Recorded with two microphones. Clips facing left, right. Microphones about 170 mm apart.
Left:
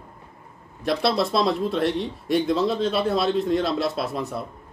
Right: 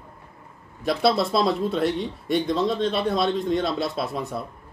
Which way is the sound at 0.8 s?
Centre (ahead or behind).